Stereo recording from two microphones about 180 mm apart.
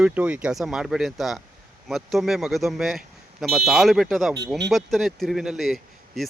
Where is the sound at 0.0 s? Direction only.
5° right (ahead or behind).